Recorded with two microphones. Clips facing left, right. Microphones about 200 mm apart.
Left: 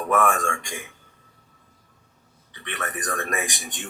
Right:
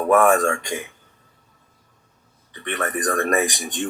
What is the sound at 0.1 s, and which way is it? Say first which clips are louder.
Speech: right 6 dB; 45° right (ahead or behind).